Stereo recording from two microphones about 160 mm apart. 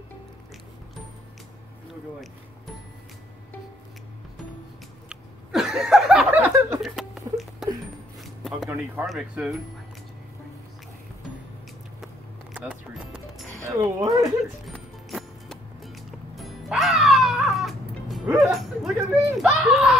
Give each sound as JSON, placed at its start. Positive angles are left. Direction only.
{"t": 5.1, "sound": "a sound", "side_deg": 0}
{"t": 9.0, "sound": "speech", "side_deg": -5}
{"t": 12.5, "sound": "music", "side_deg": -5}
{"t": 13.6, "sound": "speech", "side_deg": -20}
{"t": 14.6, "sound": "music", "side_deg": 0}
{"t": 18.4, "sound": "a sound", "side_deg": 0}